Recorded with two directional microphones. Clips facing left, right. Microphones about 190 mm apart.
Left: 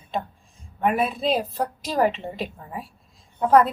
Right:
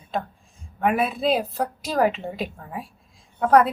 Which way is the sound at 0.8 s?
5° right (ahead or behind).